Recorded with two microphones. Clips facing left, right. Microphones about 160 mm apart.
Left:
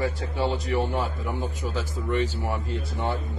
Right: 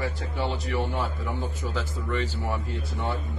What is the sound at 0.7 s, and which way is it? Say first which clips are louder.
A man's voice: left 3 dB; 15° left (ahead or behind).